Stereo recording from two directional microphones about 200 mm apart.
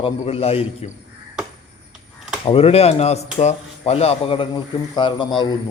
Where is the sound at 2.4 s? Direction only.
30° left (ahead or behind).